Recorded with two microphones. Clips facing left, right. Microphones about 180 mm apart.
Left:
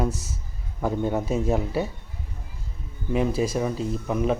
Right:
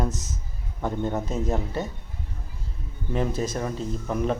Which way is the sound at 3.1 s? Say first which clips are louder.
Left 3 dB; 5° left (ahead or behind).